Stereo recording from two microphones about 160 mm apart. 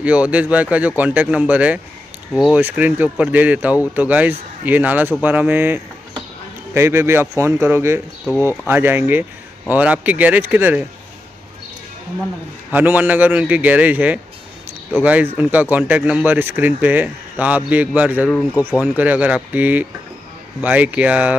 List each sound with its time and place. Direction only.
0.0 s speech: 10° right (ahead or behind)
12.7 s speech: 10° right (ahead or behind)